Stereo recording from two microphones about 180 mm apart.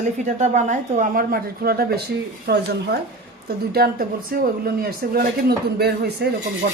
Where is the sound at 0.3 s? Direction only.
40° right (ahead or behind); by 6.2 s 65° right (ahead or behind).